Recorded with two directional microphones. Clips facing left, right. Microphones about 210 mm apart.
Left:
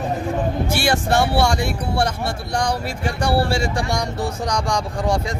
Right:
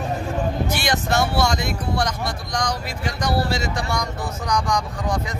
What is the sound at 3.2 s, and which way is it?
Speech, 30° left (ahead or behind).